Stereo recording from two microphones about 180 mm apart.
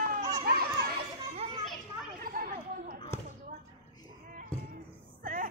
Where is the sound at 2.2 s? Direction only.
55° right (ahead or behind).